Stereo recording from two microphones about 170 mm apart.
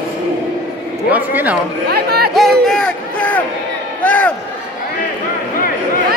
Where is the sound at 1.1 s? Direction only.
10° right (ahead or behind).